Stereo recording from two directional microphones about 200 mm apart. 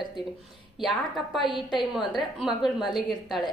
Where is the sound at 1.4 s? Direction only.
25° left (ahead or behind).